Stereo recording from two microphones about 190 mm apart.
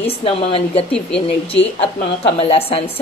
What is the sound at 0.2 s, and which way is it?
Speech, 30° left (ahead or behind).